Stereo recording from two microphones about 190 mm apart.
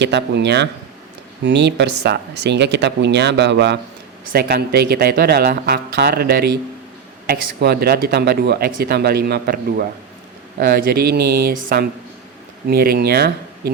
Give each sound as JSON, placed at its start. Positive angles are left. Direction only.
{"t": 0.0, "sound": "speech", "side_deg": -65}
{"t": 4.3, "sound": "a man's voice", "side_deg": -55}